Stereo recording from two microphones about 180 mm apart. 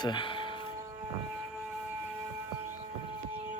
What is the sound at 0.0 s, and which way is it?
Speech, 25° left (ahead or behind).